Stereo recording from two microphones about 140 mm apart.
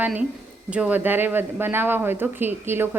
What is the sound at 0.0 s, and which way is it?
Speech, 10° right (ahead or behind).